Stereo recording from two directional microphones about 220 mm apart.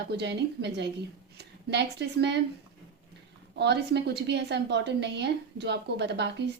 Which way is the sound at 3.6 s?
50° right (ahead or behind).